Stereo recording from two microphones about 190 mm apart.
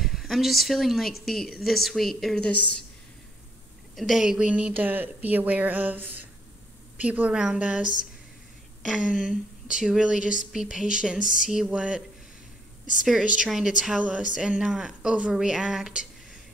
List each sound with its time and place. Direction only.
0.0 s a woman's voice: centre (ahead or behind)
3.9 s a woman's voice: centre (ahead or behind)
13.0 s a woman's voice: centre (ahead or behind)